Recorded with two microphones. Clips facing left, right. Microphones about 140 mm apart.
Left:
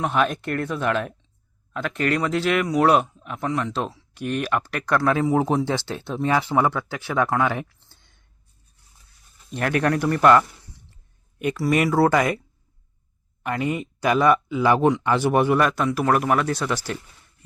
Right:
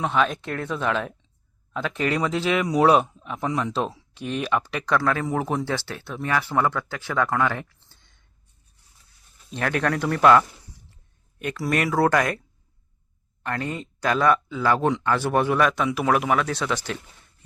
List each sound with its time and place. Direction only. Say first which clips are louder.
0.0 s speech: left 1 dB; 10° left (ahead or behind)
5.0 s speech: left 4 dB; 15° left (ahead or behind)
9.5 s speech: left 3 dB; 5° left (ahead or behind)
13.4 s speech: left 4 dB; 10° left (ahead or behind)